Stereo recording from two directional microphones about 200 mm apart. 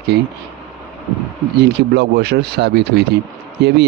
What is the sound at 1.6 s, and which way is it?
Speech, 55° right (ahead or behind).